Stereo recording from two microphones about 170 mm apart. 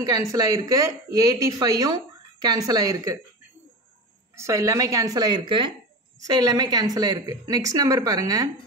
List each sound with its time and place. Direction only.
0.0 s a woman's voice: 20° right (ahead or behind)
4.4 s a woman's voice: 15° right (ahead or behind)